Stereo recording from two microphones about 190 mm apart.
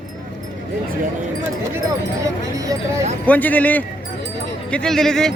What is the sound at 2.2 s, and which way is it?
Speech, 20° right (ahead or behind).